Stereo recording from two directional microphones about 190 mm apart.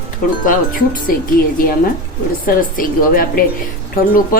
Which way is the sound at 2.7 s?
50° left (ahead or behind).